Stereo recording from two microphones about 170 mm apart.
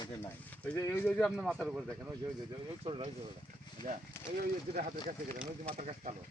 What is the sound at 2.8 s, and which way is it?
Speech, 30° right (ahead or behind).